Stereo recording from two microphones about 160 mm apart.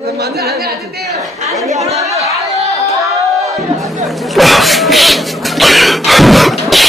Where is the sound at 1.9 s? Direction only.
20° right (ahead or behind).